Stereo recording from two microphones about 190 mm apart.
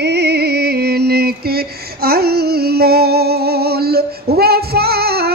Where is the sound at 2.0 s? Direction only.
55° right (ahead or behind).